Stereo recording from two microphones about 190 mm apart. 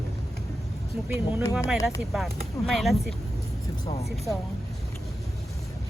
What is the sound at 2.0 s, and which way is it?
A woman's voice, centre (ahead or behind).